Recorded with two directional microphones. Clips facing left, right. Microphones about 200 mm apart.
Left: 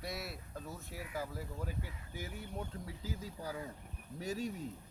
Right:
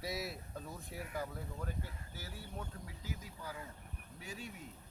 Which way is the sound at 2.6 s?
30° left (ahead or behind).